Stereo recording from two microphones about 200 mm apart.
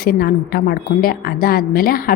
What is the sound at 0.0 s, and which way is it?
A woman's voice, 50° left (ahead or behind).